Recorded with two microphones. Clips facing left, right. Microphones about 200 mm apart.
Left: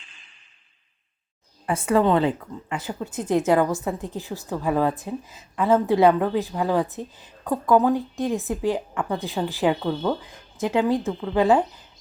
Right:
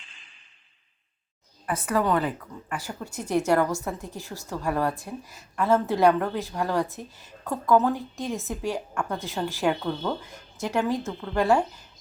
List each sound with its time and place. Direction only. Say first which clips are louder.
1.6 s a woman's voice: left 5 dB; 30° left (ahead or behind)